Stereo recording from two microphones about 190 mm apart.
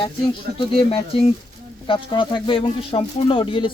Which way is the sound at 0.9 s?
30° left (ahead or behind).